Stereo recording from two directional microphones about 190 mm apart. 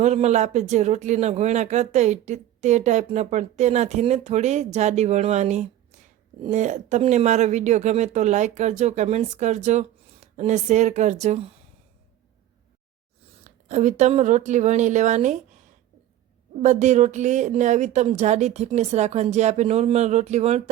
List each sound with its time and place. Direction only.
0.0 s speech: 35° right (ahead or behind)
13.7 s speech: 40° right (ahead or behind)
16.6 s speech: 40° right (ahead or behind)